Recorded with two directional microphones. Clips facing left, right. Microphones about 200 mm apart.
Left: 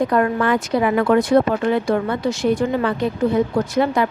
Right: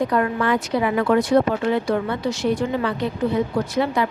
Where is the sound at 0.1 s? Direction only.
45° left (ahead or behind).